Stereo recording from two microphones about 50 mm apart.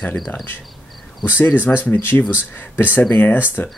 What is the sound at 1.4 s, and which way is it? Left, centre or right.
Speech, left.